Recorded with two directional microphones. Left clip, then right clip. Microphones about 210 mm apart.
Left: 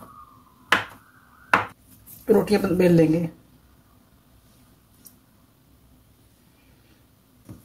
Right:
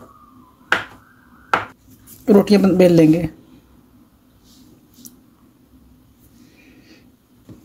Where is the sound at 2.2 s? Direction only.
45° right (ahead or behind).